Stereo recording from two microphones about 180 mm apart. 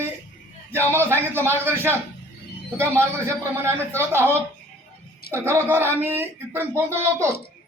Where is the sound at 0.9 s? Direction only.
15° right (ahead or behind).